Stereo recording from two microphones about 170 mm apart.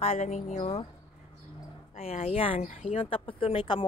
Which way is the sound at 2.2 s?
35° left (ahead or behind).